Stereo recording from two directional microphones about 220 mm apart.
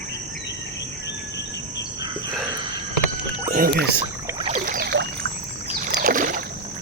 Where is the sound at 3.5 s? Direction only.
40° right (ahead or behind).